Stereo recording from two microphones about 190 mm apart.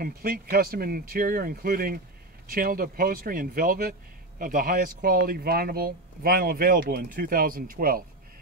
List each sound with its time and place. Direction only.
0.0 s speech: 50° right (ahead or behind)